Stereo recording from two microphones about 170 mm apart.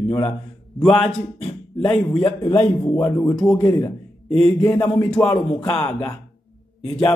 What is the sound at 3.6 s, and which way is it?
A man's voice, 20° left (ahead or behind).